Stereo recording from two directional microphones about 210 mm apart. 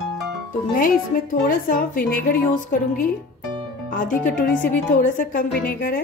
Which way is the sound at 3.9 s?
40° left (ahead or behind).